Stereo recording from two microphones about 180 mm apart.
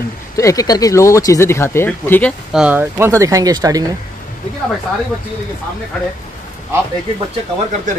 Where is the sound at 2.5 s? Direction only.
10° right (ahead or behind).